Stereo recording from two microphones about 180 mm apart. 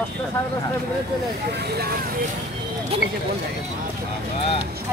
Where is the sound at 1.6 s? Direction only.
65° right (ahead or behind).